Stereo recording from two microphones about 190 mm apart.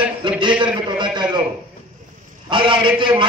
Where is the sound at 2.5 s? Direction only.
25° right (ahead or behind).